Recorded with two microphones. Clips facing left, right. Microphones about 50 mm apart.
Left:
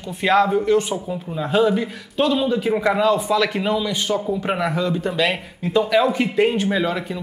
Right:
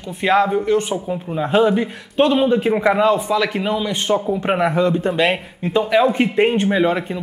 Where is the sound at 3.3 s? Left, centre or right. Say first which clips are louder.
Right 1 dB; centre.